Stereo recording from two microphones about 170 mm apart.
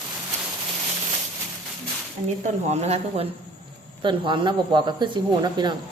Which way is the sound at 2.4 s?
40° right (ahead or behind).